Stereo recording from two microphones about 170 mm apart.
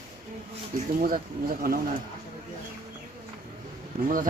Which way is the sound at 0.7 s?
50° right (ahead or behind).